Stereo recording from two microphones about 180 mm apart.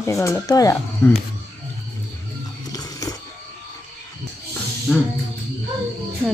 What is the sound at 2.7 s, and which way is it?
Music, 20° left (ahead or behind).